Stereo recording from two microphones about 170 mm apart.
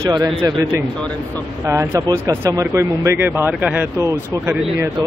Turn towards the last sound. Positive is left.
turn(degrees=-10)  # may be behind; listen again after turning